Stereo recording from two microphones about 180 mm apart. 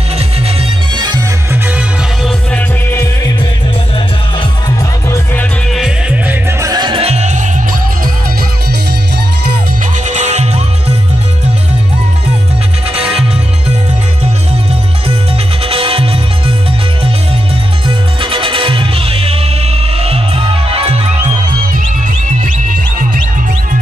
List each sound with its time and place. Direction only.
0.6 s music: 25° right (ahead or behind)
1.5 s music: 5° right (ahead or behind)
2.5 s music: 15° left (ahead or behind)
4.4 s music: 20° left (ahead or behind)
5.3 s music: 10° left (ahead or behind)
5.8 s music: 5° right (ahead or behind)
6.6 s music: 20° right (ahead or behind); by 7.4 s 40° right (ahead or behind)
10.0 s music: 40° right (ahead or behind)
15.6 s music: 30° right (ahead or behind)
17.8 s music: 30° right (ahead or behind)